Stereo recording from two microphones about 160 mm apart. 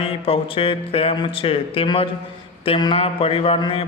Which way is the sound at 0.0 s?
35° left (ahead or behind).